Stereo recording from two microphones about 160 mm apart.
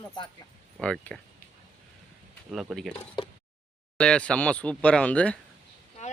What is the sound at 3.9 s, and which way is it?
Speech, 5° left (ahead or behind).